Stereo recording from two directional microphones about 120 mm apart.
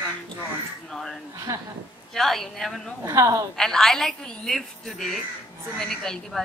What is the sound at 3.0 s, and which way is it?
Speech, 25° right (ahead or behind).